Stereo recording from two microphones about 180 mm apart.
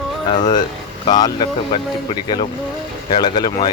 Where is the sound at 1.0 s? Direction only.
25° left (ahead or behind).